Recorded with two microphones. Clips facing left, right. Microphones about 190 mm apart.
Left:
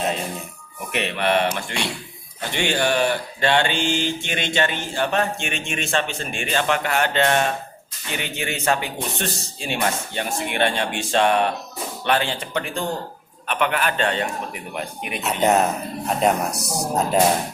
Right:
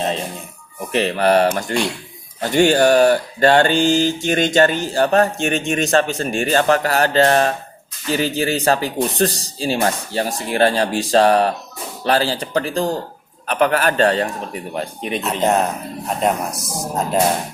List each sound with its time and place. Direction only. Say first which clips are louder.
0.9 s speech: right 6 dB; 35° right (ahead or behind)
15.2 s speech: even; centre (ahead or behind)